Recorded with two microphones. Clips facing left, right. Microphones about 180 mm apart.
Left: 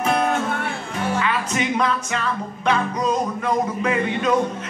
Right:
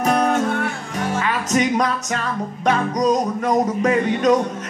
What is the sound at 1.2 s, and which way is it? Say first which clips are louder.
Music: right 3 dB; 40° right (ahead or behind).